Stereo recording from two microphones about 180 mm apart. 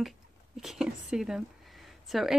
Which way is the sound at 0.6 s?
5° right (ahead or behind).